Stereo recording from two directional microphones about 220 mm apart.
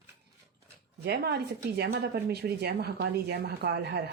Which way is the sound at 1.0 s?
45° right (ahead or behind).